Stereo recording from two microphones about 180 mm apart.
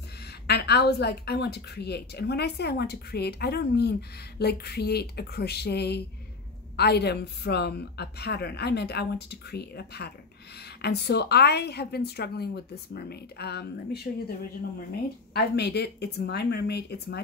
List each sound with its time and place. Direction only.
0.5 s a woman's voice: 65° left (ahead or behind)
15.3 s a woman's voice: 65° left (ahead or behind)